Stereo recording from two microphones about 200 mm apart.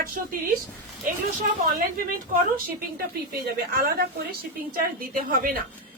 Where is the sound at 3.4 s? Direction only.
50° right (ahead or behind).